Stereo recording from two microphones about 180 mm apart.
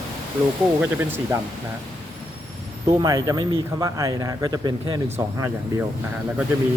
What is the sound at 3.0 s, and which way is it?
Speech, 20° right (ahead or behind).